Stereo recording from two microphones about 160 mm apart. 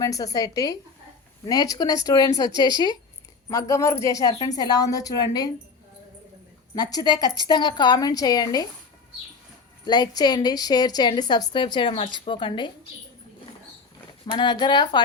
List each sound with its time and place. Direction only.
0.0 s a woman's voice: 20° left (ahead or behind)
3.5 s a woman's voice: 20° left (ahead or behind)
6.7 s a woman's voice: 25° left (ahead or behind)
9.8 s a woman's voice: 25° left (ahead or behind)
14.3 s a woman's voice: 25° left (ahead or behind)